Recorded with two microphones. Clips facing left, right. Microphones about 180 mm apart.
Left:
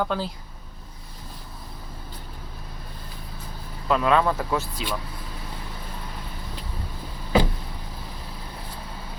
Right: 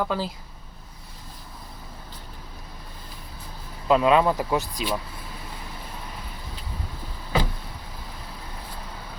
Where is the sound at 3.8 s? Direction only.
20° right (ahead or behind).